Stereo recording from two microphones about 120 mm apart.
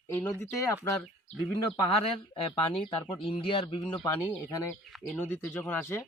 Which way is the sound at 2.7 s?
50° left (ahead or behind).